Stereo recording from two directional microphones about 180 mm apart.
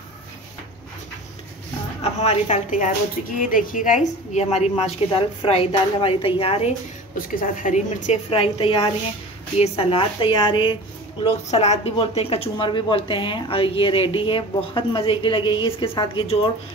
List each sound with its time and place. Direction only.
2.0 s a woman's voice: 35° left (ahead or behind)
7.2 s a woman's voice: 50° left (ahead or behind); by 10.8 s 25° left (ahead or behind)
11.2 s speech: 35° left (ahead or behind)